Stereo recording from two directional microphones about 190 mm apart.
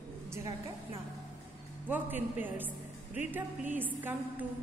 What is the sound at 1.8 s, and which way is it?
A woman's voice, 10° right (ahead or behind).